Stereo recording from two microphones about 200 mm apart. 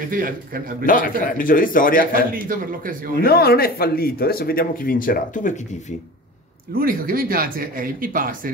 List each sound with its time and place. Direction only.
0.8 s speech: 40° left (ahead or behind)
2.4 s speech: 45° right (ahead or behind)
3.2 s speech: 50° left (ahead or behind)
6.7 s speech: 45° right (ahead or behind)